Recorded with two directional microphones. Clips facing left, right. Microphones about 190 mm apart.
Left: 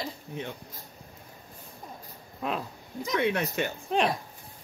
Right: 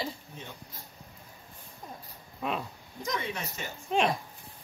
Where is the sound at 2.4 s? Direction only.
Centre (ahead or behind).